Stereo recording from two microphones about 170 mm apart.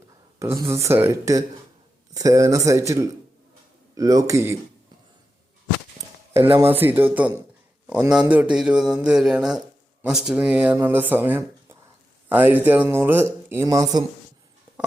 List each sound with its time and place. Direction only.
0.5 s speech: 20° right (ahead or behind)
6.3 s speech: 15° right (ahead or behind)